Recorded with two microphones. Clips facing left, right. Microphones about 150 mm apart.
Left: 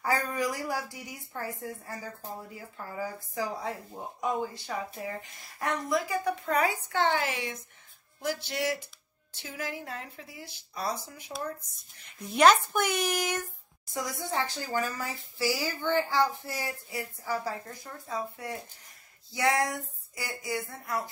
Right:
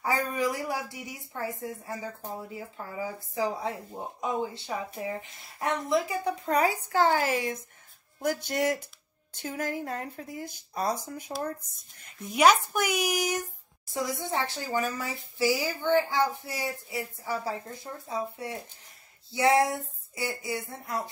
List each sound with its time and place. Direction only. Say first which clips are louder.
0.0 s a woman's voice: right 1 dB; 20° right (ahead or behind); by 11.3 s 45° right (ahead or behind)
12.3 s speech: even; 10° right (ahead or behind)
13.9 s speech: right 2 dB; 20° right (ahead or behind)